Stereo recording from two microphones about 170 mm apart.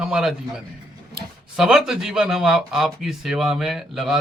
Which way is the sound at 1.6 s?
5° right (ahead or behind).